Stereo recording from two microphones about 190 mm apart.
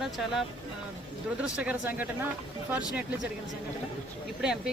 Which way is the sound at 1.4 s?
5° right (ahead or behind).